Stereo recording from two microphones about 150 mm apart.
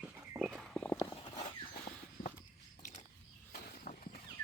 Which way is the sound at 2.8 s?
55° left (ahead or behind).